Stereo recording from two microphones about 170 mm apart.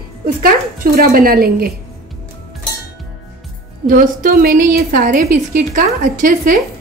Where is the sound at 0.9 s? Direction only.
60° right (ahead or behind).